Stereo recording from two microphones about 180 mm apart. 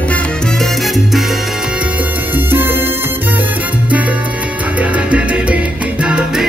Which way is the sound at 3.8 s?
10° right (ahead or behind).